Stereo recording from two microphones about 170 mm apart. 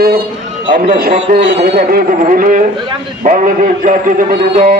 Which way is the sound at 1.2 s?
90° right.